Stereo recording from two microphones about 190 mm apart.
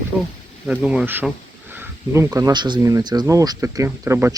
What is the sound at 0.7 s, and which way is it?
Speech, 5° right (ahead or behind).